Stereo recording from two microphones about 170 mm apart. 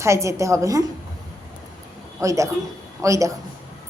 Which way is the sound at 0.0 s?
15° right (ahead or behind).